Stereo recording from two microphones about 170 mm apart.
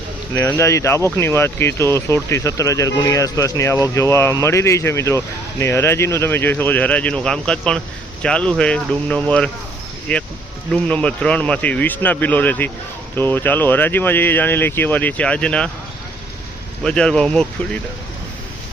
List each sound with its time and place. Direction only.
0.3 s speech: 15° left (ahead or behind)
16.8 s speech: 5° left (ahead or behind)